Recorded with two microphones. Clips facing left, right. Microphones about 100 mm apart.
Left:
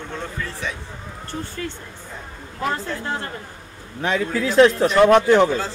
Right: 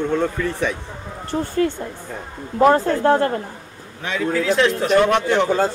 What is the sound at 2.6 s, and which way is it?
Speech, 45° right (ahead or behind).